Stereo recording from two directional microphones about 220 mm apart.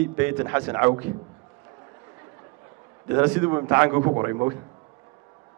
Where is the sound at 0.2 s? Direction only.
10° right (ahead or behind).